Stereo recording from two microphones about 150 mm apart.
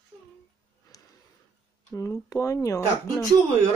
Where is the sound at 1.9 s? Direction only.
20° left (ahead or behind).